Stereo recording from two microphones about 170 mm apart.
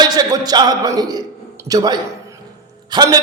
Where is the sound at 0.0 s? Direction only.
25° right (ahead or behind).